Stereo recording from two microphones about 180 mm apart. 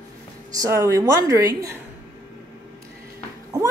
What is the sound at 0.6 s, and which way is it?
Speech, 15° right (ahead or behind).